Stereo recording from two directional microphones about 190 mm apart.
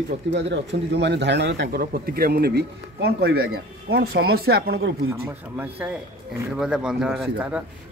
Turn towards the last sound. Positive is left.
turn(degrees=-5)  # may be behind; listen again after turning